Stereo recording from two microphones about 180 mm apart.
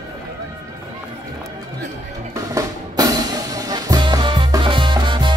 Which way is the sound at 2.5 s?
20° right (ahead or behind).